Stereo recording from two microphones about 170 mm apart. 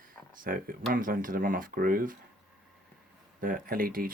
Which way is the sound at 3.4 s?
55° right (ahead or behind).